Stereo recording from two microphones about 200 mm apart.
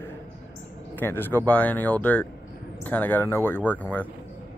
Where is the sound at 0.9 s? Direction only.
10° left (ahead or behind).